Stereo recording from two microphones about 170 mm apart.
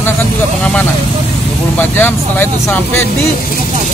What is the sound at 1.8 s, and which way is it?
Speech, 10° left (ahead or behind).